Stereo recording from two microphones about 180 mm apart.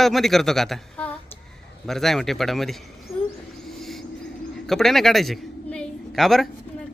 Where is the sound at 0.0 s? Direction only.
Centre (ahead or behind).